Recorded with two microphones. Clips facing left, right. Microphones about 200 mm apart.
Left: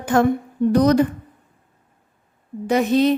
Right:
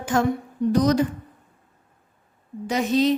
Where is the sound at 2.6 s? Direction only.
55° left (ahead or behind).